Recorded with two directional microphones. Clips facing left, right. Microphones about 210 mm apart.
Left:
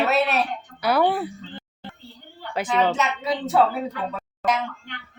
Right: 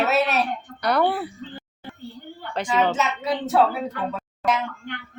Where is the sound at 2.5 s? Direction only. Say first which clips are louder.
Even; 5° left (ahead or behind).